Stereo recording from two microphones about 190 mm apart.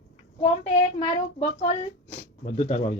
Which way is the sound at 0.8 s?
35° left (ahead or behind).